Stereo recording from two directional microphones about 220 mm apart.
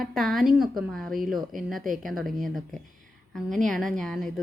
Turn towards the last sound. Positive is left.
turn(degrees=0)  # may be behind; listen again after turning